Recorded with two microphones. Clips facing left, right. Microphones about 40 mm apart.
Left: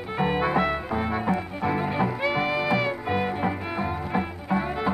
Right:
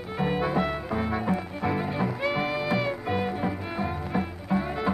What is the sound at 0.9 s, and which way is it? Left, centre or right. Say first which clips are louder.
Music: left 2 dB; centre.